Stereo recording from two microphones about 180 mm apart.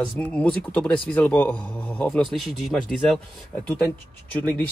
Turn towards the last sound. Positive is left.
turn(degrees=10)  # may be behind; listen again after turning